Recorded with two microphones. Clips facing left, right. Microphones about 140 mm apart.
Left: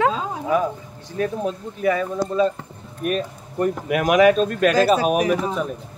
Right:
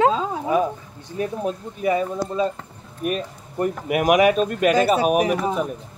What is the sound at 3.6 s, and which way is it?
Speech, 10° right (ahead or behind).